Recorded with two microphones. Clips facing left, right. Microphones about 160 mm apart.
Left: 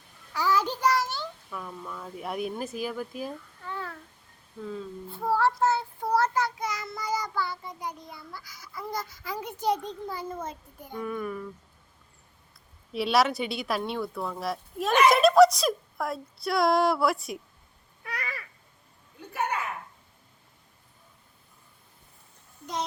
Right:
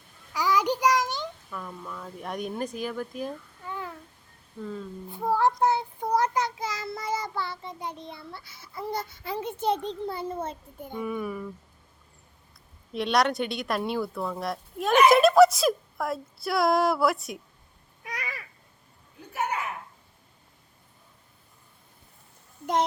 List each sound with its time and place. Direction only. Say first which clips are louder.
0.3 s a sound: right 2 dB; 15° right (ahead or behind)
1.5 s speech: even; 5° left (ahead or behind)
3.6 s babbling: even; 15° right (ahead or behind)
4.6 s speech: even; centre (ahead or behind)
5.1 s child singing: right 1 dB; 15° right (ahead or behind)
9.7 s a child's voice: right 2 dB; 10° left (ahead or behind)
10.1 s child singing: right 3 dB; 30° right (ahead or behind)
10.9 s speech: right 1 dB; 5° right (ahead or behind)
12.9 s speech: even; 5° left (ahead or behind)
18.0 s babbling: even; 15° right (ahead or behind)
22.6 s speech: right 7 dB; 60° right (ahead or behind)